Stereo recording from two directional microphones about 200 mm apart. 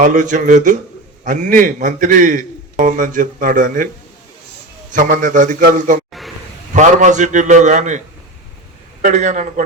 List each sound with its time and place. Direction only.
0.0 s a man's voice: 40° right (ahead or behind)
4.9 s a man's voice: 40° right (ahead or behind)
6.2 s a sound: centre (ahead or behind)
6.7 s a man's voice: 35° right (ahead or behind)
9.0 s a man's voice: 40° right (ahead or behind)